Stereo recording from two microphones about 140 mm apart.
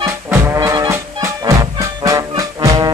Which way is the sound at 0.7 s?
20° right (ahead or behind).